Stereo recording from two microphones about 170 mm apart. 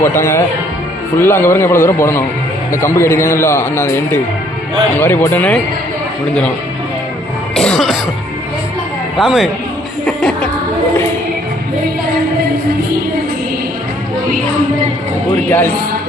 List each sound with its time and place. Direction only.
0.0 s a man's voice: 15° left (ahead or behind)
7.5 s music: 5° left (ahead or behind)
9.1 s speech: centre (ahead or behind)
10.1 s music: 5° left (ahead or behind)
15.4 s a man's voice: 15° left (ahead or behind)